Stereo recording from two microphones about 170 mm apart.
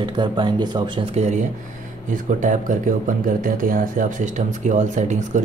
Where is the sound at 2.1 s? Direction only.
50° right (ahead or behind).